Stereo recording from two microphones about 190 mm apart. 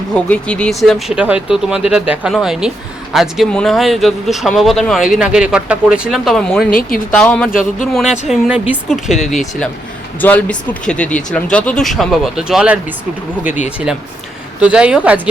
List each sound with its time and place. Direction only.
0.1 s speech: 5° left (ahead or behind)
6.7 s speech: 50° left (ahead or behind)
7.1 s speech: 5° left (ahead or behind)